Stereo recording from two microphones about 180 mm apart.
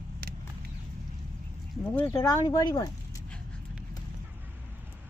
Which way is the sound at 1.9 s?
15° left (ahead or behind).